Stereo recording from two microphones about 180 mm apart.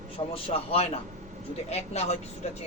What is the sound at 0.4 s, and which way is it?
Speech, 35° left (ahead or behind).